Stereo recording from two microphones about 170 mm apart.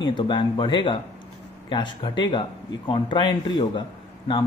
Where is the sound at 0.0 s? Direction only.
30° left (ahead or behind).